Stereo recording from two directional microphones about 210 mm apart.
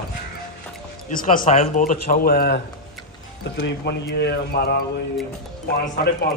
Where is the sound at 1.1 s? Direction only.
40° left (ahead or behind).